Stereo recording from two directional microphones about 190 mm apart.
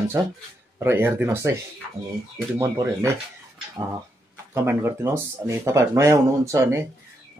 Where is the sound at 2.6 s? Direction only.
15° right (ahead or behind).